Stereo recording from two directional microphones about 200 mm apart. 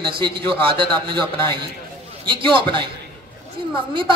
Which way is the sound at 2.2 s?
25° right (ahead or behind).